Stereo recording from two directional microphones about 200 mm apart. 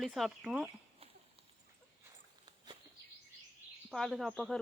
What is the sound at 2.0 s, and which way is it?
Dog, 20° right (ahead or behind).